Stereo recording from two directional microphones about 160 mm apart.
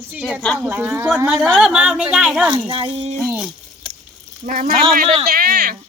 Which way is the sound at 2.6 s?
35° right (ahead or behind).